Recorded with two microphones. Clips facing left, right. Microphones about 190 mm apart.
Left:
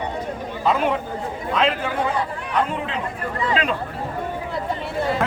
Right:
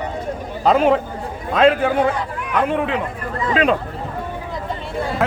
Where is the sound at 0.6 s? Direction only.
90° right.